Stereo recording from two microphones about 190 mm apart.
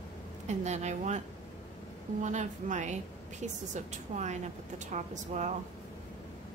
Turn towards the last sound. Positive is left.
turn(degrees=-40)  # may be behind; listen again after turning